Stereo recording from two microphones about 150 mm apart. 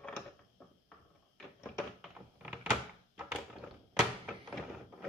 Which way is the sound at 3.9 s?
Centre (ahead or behind).